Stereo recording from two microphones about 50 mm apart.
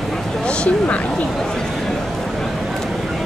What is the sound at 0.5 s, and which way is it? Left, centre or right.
Speech, left.